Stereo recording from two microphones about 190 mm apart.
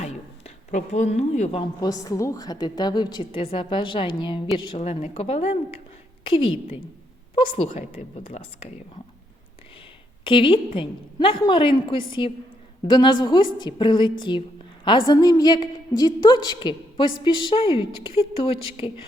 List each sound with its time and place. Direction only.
0.0 s a sound: 35° left (ahead or behind)
1.8 s a woman's voice: 20° left (ahead or behind)
7.3 s a woman's voice: 30° left (ahead or behind)
10.2 s a woman's voice: 25° left (ahead or behind)